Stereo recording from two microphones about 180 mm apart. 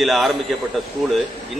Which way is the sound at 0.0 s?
Centre (ahead or behind).